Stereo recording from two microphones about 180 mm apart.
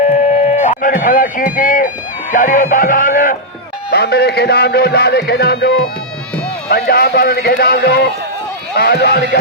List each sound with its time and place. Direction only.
0.4 s music: 40° left (ahead or behind)
3.9 s music: 65° left (ahead or behind)